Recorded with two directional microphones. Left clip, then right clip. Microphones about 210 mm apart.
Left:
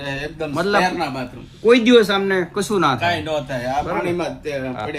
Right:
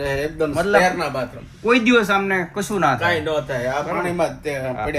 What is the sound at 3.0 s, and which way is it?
Speech, 40° right (ahead or behind).